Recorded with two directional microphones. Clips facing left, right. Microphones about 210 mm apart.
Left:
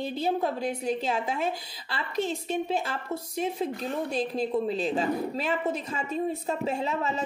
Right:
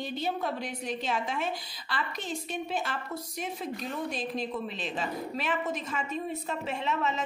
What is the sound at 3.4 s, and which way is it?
A woman's voice, 30° left (ahead or behind).